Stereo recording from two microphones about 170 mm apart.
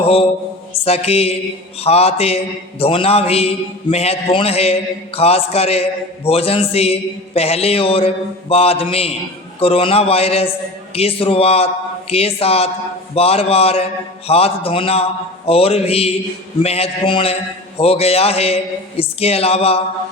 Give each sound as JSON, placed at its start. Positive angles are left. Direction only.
{"t": 0.0, "sound": "mantra", "side_deg": 35}
{"t": 0.9, "sound": "a man's voice", "side_deg": 35}